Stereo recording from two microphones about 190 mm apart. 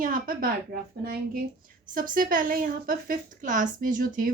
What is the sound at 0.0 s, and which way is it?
Speech, 50° right (ahead or behind).